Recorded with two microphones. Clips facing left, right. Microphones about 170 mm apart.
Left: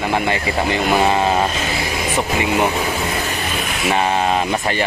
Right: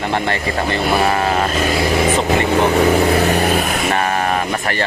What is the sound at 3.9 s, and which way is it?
Speech, 20° left (ahead or behind).